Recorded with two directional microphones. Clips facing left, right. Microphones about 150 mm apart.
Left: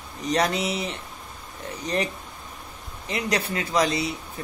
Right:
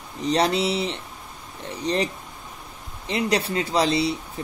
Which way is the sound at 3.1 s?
30° right (ahead or behind).